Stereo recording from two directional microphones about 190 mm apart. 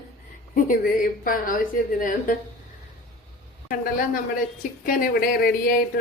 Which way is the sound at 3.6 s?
50° left (ahead or behind).